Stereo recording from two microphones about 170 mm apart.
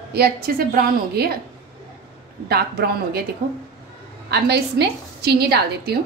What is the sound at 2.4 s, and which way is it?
Speech, 65° right (ahead or behind).